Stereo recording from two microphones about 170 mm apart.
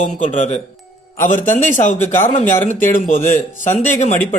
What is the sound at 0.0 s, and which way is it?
Speech, 45° left (ahead or behind).